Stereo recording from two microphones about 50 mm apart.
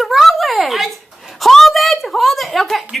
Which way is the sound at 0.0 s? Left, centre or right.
Centre.